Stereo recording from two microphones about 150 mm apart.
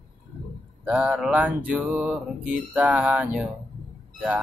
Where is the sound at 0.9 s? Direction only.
5° right (ahead or behind).